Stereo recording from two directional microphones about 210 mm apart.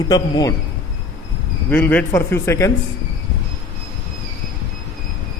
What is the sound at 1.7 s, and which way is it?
A man's voice, 10° left (ahead or behind).